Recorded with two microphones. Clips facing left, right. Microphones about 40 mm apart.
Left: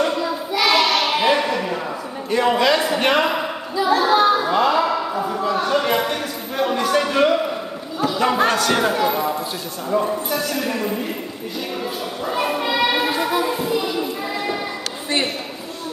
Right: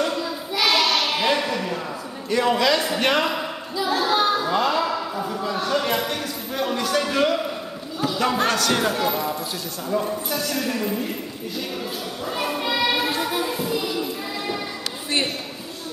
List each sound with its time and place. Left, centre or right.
0.0 s child singing: centre
2.3 s a man's voice: centre
12.3 s a sound: centre